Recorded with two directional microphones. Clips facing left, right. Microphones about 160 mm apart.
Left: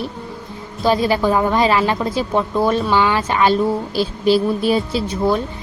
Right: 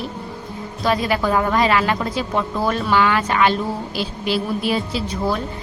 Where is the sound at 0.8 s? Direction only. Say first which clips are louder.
Left 4 dB; 30° left (ahead or behind).